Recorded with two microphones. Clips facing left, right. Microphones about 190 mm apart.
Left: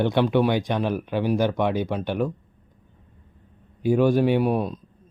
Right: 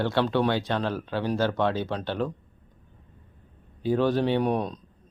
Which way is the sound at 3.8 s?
10° left (ahead or behind).